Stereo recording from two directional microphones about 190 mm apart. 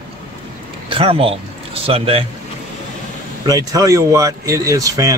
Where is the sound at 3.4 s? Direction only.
20° right (ahead or behind).